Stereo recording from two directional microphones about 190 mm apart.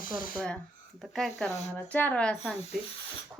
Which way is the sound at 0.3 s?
5° left (ahead or behind).